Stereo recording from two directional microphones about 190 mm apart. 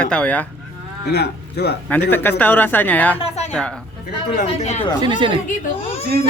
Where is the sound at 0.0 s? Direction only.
5° left (ahead or behind).